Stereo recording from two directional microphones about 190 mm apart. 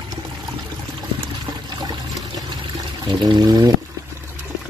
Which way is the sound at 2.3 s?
25° right (ahead or behind).